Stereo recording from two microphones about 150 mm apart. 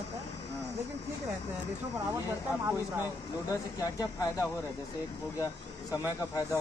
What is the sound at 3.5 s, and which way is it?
Speech, 25° left (ahead or behind).